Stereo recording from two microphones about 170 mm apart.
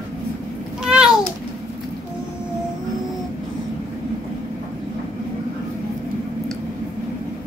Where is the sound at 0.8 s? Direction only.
5° right (ahead or behind).